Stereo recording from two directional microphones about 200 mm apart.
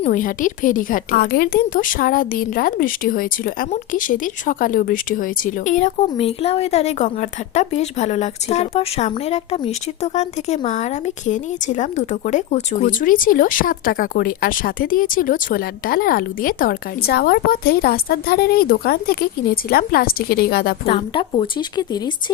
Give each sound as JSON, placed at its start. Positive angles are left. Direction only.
{"t": 0.0, "sound": "a woman's voice", "side_deg": 40}
{"t": 20.8, "sound": "speech", "side_deg": 25}